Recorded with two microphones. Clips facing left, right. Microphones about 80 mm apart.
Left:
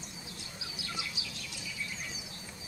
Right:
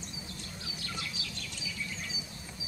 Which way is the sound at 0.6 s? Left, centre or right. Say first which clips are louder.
Even; centre.